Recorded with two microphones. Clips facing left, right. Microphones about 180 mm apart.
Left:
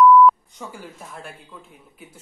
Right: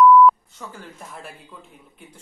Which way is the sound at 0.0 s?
Centre (ahead or behind).